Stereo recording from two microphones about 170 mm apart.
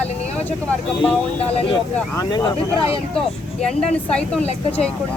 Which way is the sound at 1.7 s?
25° left (ahead or behind).